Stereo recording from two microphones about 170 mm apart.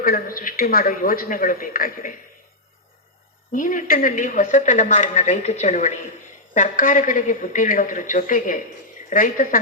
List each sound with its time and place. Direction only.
0.0 s a man's voice: 60° left (ahead or behind)
3.5 s speech: 50° left (ahead or behind)